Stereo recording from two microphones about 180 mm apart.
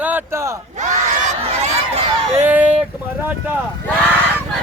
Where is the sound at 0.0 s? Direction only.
10° right (ahead or behind).